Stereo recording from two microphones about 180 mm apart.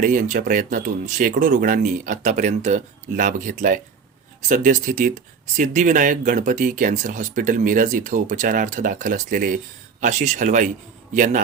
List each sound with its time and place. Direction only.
0.0 s speech: 45° right (ahead or behind)